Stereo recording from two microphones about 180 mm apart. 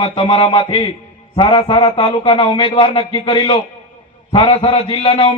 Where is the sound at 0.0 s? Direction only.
30° left (ahead or behind).